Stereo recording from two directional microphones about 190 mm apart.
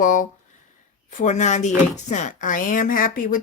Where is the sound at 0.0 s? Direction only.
45° left (ahead or behind).